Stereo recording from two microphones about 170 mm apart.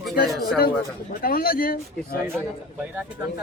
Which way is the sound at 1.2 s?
60° left (ahead or behind).